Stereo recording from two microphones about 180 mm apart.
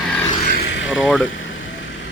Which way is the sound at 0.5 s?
70° left (ahead or behind).